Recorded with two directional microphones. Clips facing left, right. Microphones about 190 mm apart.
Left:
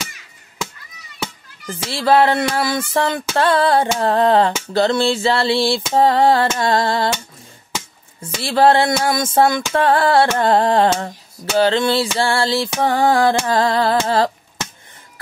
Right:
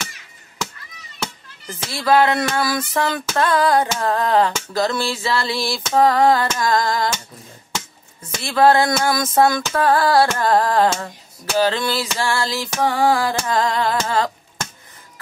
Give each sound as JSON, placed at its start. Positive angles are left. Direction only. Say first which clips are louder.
{"t": 1.9, "sound": "music", "louder": "left 2 dB", "side_deg": 30}
{"t": 8.2, "sound": "music", "louder": "left 1 dB", "side_deg": 30}
{"t": 12.2, "sound": "a sound", "louder": "left 4 dB", "side_deg": 30}